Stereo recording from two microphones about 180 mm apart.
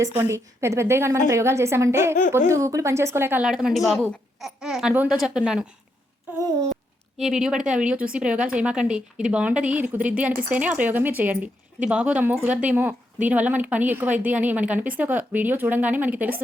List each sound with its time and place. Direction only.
0.0 s speech: 15° right (ahead or behind)
6.3 s babbling: 20° right (ahead or behind)
7.2 s speech: 5° right (ahead or behind)